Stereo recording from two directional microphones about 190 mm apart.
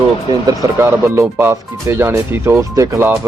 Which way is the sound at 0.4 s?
15° right (ahead or behind).